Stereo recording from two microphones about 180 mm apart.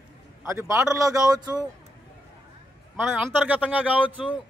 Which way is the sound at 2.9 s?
10° right (ahead or behind).